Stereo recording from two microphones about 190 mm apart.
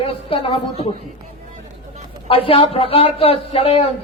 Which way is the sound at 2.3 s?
30° left (ahead or behind).